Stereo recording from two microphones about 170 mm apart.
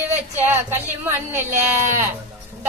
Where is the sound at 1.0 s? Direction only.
15° right (ahead or behind).